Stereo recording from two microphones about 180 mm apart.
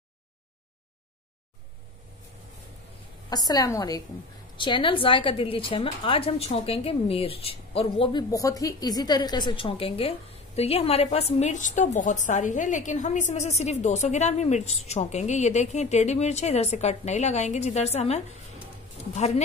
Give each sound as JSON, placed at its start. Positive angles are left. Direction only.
{"t": 3.3, "sound": "a woman's voice", "side_deg": 20}